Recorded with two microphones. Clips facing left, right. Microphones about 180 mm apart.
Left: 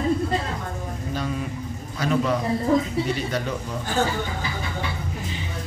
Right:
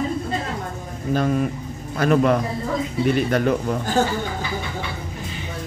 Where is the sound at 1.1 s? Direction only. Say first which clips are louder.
Right 9 dB; 55° right (ahead or behind).